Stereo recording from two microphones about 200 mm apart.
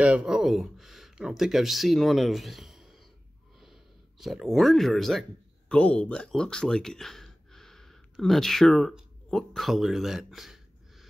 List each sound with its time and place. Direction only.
0.0 s speech: 5° right (ahead or behind)
3.5 s a sound: centre (ahead or behind)
5.7 s speech: 5° left (ahead or behind)